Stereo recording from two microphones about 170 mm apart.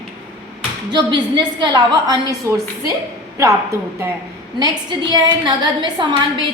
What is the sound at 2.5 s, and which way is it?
A woman's voice, 15° right (ahead or behind).